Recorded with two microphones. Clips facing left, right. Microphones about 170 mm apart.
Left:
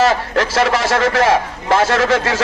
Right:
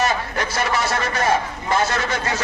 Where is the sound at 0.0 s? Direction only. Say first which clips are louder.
Left 7 dB; 90° left.